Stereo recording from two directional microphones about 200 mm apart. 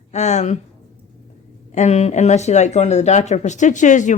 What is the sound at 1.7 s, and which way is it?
Speech, 35° left (ahead or behind).